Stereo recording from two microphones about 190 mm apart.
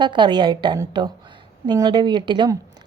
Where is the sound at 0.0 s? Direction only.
25° right (ahead or behind).